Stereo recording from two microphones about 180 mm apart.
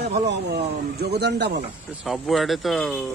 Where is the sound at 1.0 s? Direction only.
65° right (ahead or behind).